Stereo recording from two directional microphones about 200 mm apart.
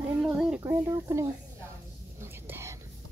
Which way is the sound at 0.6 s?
15° right (ahead or behind).